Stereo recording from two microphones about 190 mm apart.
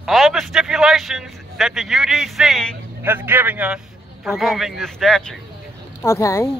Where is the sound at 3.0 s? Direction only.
10° right (ahead or behind).